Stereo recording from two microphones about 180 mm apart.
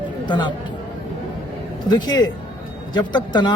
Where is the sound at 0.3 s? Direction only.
25° left (ahead or behind).